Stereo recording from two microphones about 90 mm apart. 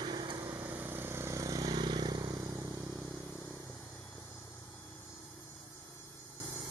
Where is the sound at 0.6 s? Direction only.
20° right (ahead or behind); by 2.3 s 50° right (ahead or behind).